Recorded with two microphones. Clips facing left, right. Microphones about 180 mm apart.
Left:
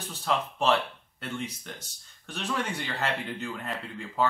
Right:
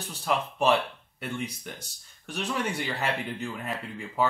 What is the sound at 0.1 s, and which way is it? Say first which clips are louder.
A man's voice: right 1 dB; 10° right (ahead or behind).